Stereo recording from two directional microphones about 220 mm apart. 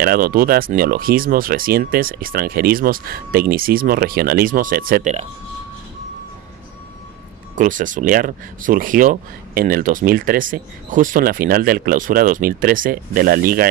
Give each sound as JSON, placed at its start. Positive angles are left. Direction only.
{"t": 0.0, "sound": "speech", "side_deg": -45}
{"t": 7.5, "sound": "speech", "side_deg": -35}